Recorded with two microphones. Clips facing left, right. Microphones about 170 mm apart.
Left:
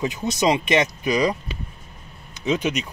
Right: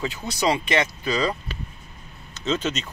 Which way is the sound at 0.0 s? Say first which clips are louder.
Left 3 dB; 20° left (ahead or behind).